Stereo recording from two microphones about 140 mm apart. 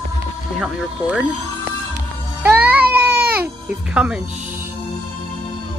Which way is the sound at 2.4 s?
10° right (ahead or behind).